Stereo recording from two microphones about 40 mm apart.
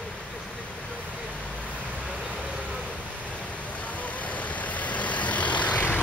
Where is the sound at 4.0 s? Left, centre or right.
Left.